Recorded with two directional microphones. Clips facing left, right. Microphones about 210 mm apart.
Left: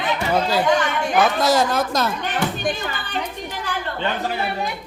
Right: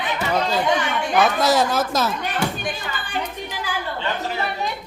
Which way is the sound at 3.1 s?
5° right (ahead or behind).